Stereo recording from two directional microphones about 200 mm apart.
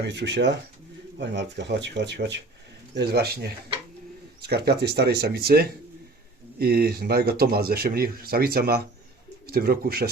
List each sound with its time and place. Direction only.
0.0 s speech: 55° right (ahead or behind)